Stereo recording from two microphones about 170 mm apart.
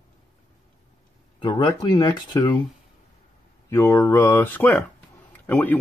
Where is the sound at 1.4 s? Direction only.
25° left (ahead or behind).